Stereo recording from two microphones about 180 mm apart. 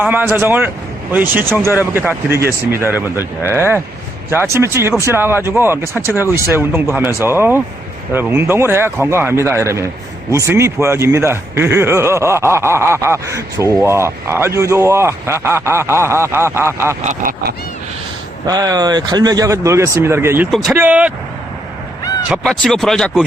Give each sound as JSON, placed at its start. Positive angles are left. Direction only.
{"t": 0.0, "sound": "speech", "side_deg": -10}
{"t": 17.0, "sound": "a sound", "side_deg": -40}
{"t": 18.4, "sound": "speech", "side_deg": -20}
{"t": 22.3, "sound": "speech", "side_deg": 5}